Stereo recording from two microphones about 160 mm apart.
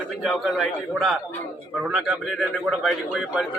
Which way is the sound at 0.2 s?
Centre (ahead or behind).